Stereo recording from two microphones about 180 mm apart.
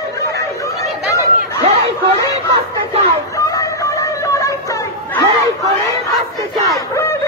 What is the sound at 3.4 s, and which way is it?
Music, 20° left (ahead or behind).